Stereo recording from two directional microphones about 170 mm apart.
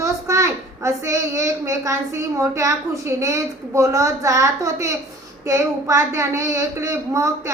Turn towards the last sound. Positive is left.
turn(degrees=-20)  # may be behind; listen again after turning